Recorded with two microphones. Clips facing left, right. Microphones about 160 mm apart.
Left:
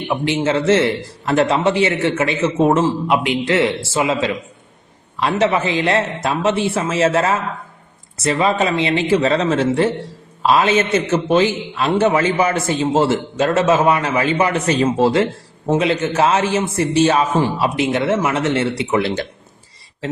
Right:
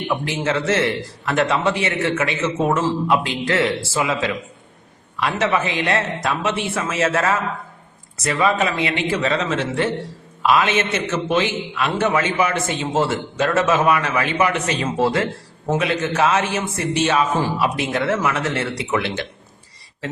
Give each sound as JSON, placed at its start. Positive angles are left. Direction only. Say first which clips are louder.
{"t": 0.1, "sound": "a man's voice", "louder": "left 5 dB", "side_deg": 25}
{"t": 2.8, "sound": "a man's voice", "louder": "left 2 dB", "side_deg": 20}
{"t": 17.3, "sound": "a man's voice", "louder": "left 3 dB", "side_deg": 25}